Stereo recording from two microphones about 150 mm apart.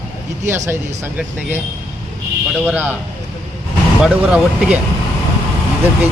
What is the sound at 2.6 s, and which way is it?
Speech, 10° right (ahead or behind).